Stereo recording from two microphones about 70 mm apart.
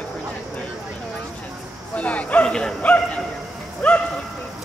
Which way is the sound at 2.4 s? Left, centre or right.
Centre.